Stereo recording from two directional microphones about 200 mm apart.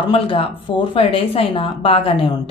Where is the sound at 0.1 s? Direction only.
25° left (ahead or behind).